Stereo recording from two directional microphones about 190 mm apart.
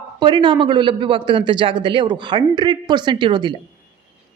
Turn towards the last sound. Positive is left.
turn(degrees=-25)  # may be behind; listen again after turning